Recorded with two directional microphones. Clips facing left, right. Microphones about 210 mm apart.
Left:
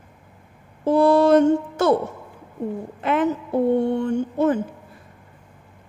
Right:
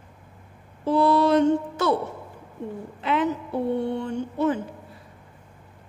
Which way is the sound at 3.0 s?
50° left (ahead or behind).